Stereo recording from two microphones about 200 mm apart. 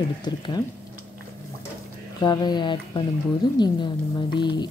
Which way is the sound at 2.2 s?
20° left (ahead or behind).